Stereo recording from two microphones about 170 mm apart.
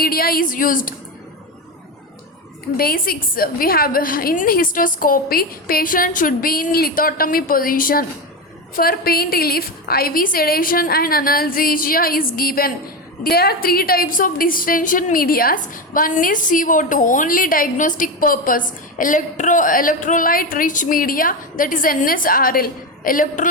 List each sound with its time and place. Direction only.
0.0 s a woman's voice: 60° left (ahead or behind)
2.7 s a woman's voice: 60° left (ahead or behind)